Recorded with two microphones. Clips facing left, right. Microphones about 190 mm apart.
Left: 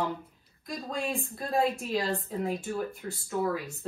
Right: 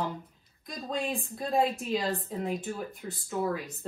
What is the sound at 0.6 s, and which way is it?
A woman's voice, centre (ahead or behind).